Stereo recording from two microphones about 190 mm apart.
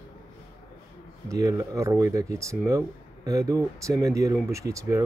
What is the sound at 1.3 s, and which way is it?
Speech, 15° right (ahead or behind).